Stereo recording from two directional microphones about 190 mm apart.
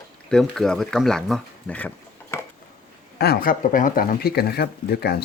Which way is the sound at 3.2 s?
50° left (ahead or behind).